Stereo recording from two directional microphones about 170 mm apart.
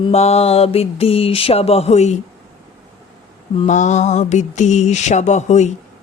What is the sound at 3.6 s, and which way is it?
Mantra, 45° left (ahead or behind).